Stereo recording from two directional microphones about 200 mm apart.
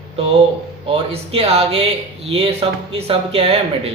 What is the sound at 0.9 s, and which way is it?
Speech, 30° right (ahead or behind).